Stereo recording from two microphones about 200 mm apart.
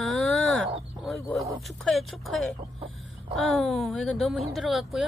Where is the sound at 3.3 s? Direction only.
Centre (ahead or behind).